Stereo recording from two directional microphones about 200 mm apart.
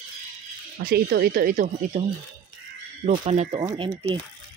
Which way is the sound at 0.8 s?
50° right (ahead or behind).